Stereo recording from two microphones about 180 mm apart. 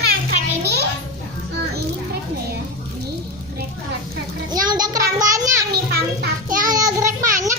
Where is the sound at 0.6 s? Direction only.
65° right (ahead or behind).